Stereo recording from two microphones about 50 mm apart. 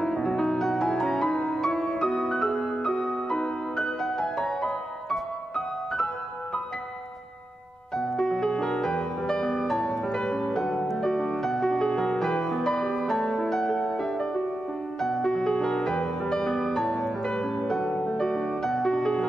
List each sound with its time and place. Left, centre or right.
0.0 s music: centre
8.0 s music: centre